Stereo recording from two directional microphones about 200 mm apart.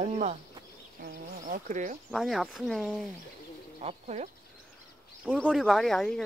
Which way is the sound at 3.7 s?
35° right (ahead or behind).